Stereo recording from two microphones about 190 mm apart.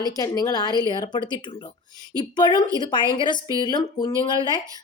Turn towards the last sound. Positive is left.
turn(degrees=20)  # may be behind; listen again after turning